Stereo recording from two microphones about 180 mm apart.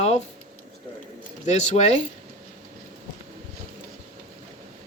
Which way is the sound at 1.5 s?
40° left (ahead or behind).